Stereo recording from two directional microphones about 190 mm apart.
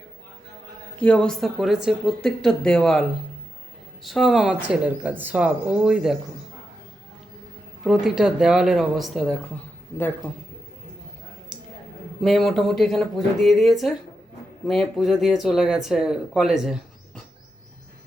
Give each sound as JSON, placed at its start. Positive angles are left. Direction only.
{"t": 0.9, "sound": "speech", "side_deg": 5}
{"t": 7.9, "sound": "speech", "side_deg": -5}
{"t": 12.2, "sound": "speech", "side_deg": 0}